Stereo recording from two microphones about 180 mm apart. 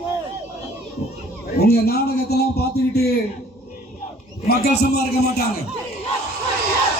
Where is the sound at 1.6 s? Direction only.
60° left (ahead or behind).